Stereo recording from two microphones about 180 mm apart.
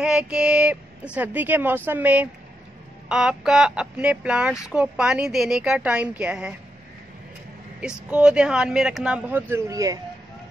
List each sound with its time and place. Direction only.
0.0 s speech: 5° right (ahead or behind)
7.8 s speech: 5° right (ahead or behind)